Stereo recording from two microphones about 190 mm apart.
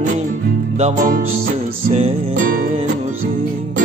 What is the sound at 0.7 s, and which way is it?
Music, 40° right (ahead or behind).